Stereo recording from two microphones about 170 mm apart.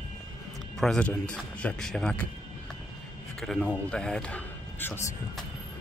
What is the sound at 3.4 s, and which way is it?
Speech, 5° left (ahead or behind).